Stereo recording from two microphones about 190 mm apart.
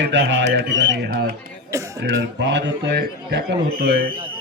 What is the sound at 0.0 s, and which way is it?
A man's voice, 75° right (ahead or behind).